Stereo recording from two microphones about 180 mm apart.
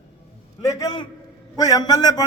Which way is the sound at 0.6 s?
20° left (ahead or behind).